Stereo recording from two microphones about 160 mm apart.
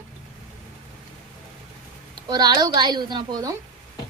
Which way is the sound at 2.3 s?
25° right (ahead or behind).